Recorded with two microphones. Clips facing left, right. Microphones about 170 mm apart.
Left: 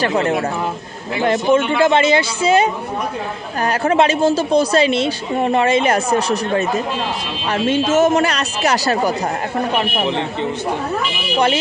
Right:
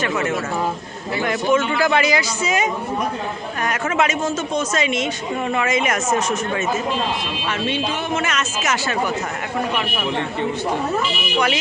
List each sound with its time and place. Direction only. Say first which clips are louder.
0.0 s a woman's voice: left 5 dB; 35° left (ahead or behind)